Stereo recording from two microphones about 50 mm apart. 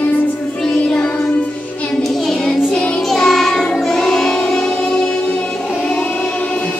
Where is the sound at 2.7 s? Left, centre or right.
Left.